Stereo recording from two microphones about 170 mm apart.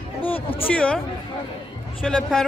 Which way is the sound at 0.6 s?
5° left (ahead or behind).